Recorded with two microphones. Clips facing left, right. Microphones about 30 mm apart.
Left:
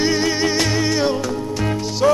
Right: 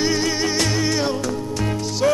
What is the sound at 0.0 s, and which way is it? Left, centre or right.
Music, centre.